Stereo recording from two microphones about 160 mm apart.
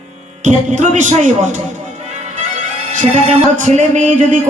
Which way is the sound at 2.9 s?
50° right (ahead or behind).